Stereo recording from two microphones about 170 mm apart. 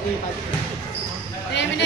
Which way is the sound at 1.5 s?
90° left.